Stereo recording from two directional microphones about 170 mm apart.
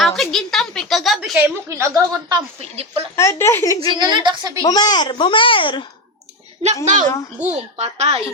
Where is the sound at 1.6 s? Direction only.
15° right (ahead or behind).